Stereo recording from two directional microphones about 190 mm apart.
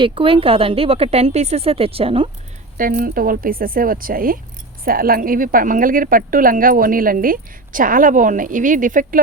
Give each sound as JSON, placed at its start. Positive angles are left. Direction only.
{"t": 0.0, "sound": "speech", "side_deg": -25}
{"t": 2.7, "sound": "a woman's voice", "side_deg": -50}